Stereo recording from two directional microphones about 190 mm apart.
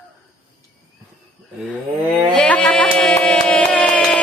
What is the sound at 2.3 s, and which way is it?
Music, 5° left (ahead or behind).